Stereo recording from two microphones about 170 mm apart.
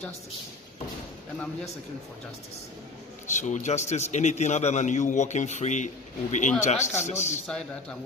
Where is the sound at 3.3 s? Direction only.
45° left (ahead or behind).